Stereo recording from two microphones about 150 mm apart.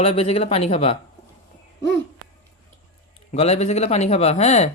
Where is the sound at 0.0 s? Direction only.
40° left (ahead or behind).